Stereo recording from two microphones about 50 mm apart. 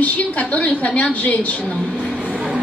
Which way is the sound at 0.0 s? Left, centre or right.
Left.